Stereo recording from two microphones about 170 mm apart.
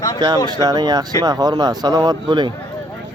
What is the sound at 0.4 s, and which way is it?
Speech, 25° right (ahead or behind).